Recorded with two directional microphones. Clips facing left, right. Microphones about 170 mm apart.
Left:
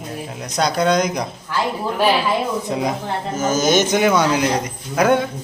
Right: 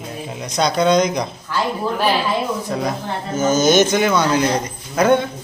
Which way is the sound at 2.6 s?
15° left (ahead or behind).